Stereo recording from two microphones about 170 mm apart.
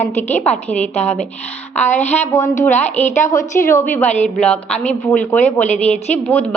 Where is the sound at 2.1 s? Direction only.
15° left (ahead or behind).